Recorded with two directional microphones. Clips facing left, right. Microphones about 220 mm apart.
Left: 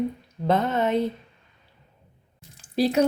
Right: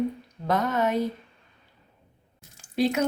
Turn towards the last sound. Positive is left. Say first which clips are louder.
# left 3 dB
turn(degrees=35)  # may be behind; listen again after turning